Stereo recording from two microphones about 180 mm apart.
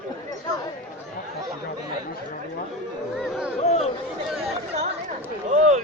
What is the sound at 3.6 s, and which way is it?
Chatter, 35° left (ahead or behind).